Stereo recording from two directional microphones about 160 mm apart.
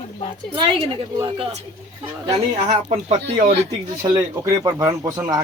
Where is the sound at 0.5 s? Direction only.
30° right (ahead or behind).